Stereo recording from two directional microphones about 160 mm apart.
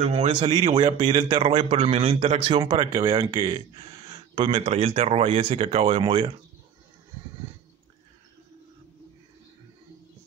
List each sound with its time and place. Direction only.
0.0 s speech: 45° right (ahead or behind)